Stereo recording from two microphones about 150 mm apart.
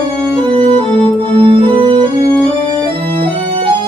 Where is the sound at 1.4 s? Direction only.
30° right (ahead or behind).